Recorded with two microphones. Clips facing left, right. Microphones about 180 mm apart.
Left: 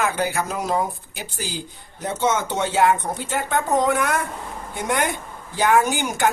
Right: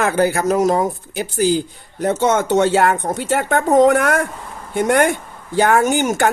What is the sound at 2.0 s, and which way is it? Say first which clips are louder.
Speech: right 6 dB; 65° right (ahead or behind).